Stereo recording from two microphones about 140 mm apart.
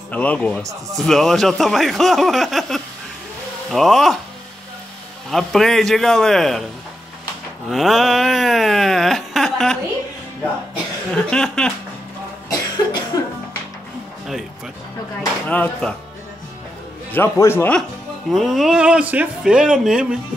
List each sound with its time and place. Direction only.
0.1 s a man's voice: 10° left (ahead or behind)
0.9 s wail: centre (ahead or behind)
5.3 s wail: centre (ahead or behind)
7.7 s wail: centre (ahead or behind)
11.1 s wail: 5° left (ahead or behind)
12.4 s cough: 25° left (ahead or behind)
15.4 s a man's voice: 10° left (ahead or behind)
17.1 s a man's voice: 15° left (ahead or behind)
18.3 s speech: centre (ahead or behind)